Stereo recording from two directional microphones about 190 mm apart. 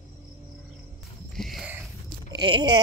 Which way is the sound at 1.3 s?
Centre (ahead or behind).